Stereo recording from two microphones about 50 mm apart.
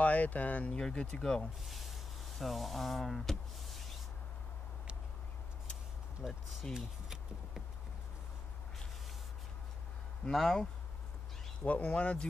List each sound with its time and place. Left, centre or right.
0.0 s speech: left
0.7 s speech: centre
1.7 s a sound: centre
6.2 s speech: centre
6.7 s a sound: centre
10.3 s speech: centre
11.6 s speech: left